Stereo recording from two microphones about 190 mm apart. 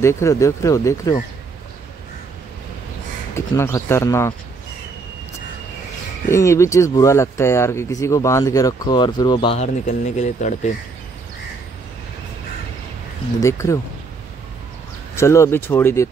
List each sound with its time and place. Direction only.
0.0 s speech: 15° left (ahead or behind)
3.3 s speech: 15° left (ahead or behind)
6.3 s speech: 15° left (ahead or behind)
9.8 s speech: 40° left (ahead or behind)
13.4 s speech: 15° left (ahead or behind)
15.1 s speech: 15° left (ahead or behind)